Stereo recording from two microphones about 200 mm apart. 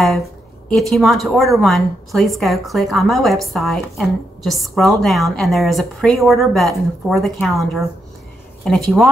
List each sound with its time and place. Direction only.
0.7 s speech: centre (ahead or behind)